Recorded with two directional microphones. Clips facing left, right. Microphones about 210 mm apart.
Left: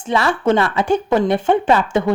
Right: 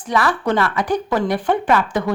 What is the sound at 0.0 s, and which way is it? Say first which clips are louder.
A woman's voice: left 2 dB; 25° left (ahead or behind).